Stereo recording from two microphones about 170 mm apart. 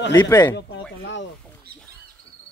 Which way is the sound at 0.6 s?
90° left.